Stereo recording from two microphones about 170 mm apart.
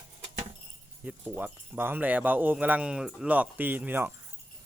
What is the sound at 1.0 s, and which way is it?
Speech, 10° right (ahead or behind).